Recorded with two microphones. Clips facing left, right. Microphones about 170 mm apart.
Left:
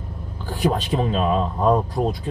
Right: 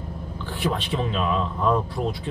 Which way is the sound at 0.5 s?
40° left (ahead or behind).